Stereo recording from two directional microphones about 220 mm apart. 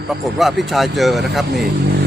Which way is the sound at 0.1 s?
Centre (ahead or behind).